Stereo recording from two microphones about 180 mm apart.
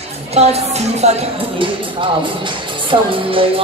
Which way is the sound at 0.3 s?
35° right (ahead or behind).